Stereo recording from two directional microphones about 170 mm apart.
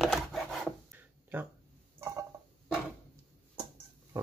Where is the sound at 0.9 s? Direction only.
10° right (ahead or behind).